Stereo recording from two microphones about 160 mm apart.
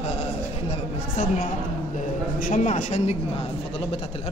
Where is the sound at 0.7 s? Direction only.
50° left (ahead or behind).